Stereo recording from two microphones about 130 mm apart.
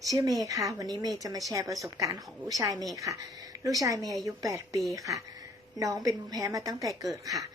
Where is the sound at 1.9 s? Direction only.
25° right (ahead or behind).